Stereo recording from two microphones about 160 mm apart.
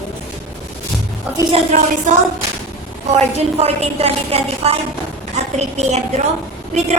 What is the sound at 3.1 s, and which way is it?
A woman's voice, 40° right (ahead or behind).